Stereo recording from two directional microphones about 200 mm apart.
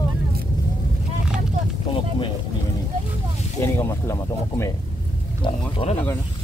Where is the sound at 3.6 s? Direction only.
15° left (ahead or behind).